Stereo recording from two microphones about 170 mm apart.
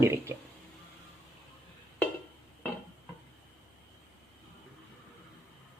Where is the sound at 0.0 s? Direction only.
15° right (ahead or behind).